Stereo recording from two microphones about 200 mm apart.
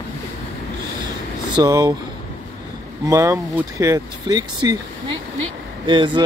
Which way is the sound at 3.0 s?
15° right (ahead or behind).